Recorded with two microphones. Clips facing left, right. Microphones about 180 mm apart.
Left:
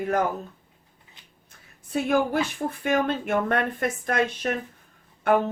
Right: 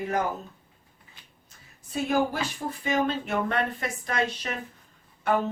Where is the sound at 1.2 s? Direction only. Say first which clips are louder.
Right 2 dB; 20° left (ahead or behind).